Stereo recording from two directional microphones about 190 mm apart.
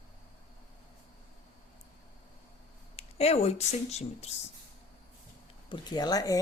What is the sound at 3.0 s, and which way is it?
A woman's voice, 35° left (ahead or behind).